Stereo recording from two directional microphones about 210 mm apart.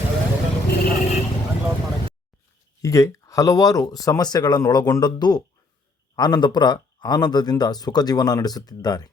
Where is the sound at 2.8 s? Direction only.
15° left (ahead or behind).